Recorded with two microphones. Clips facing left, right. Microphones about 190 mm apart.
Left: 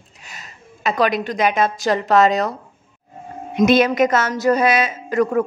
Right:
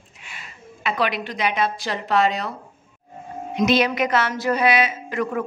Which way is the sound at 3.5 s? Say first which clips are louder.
Left 5 dB; 50° left (ahead or behind).